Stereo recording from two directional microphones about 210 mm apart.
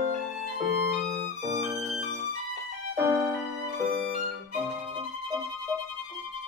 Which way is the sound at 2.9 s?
15° right (ahead or behind).